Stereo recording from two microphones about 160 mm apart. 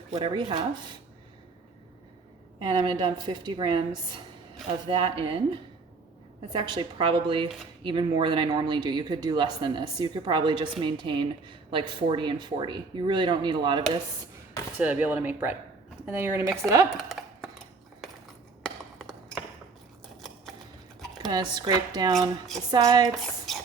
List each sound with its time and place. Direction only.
0.2 s speech: 30° right (ahead or behind)
2.6 s a woman's voice: 30° right (ahead or behind)
14.8 s speech: 10° right (ahead or behind)
18.6 s a sound: centre (ahead or behind)
21.2 s speech: 25° right (ahead or behind)